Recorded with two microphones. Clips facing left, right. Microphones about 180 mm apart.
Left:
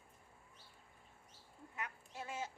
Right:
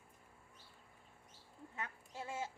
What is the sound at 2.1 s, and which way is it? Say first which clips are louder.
Duck: right 2 dB; 20° right (ahead or behind).